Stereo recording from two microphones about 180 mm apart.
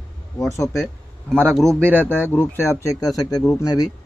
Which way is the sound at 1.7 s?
10° right (ahead or behind).